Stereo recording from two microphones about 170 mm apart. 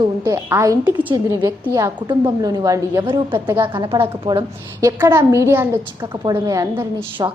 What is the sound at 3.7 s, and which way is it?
A woman's voice, 30° right (ahead or behind).